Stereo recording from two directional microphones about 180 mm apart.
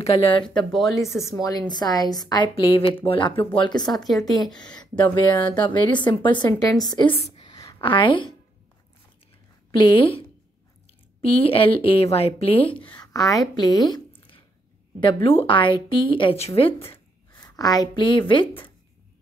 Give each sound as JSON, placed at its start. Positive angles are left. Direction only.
{"t": 0.0, "sound": "speech", "side_deg": 30}
{"t": 0.5, "sound": "speech", "side_deg": 5}
{"t": 1.2, "sound": "a woman's voice", "side_deg": 20}
{"t": 7.3, "sound": "a sound", "side_deg": 20}
{"t": 9.7, "sound": "speech", "side_deg": 30}
{"t": 17.3, "sound": "a woman's voice", "side_deg": 20}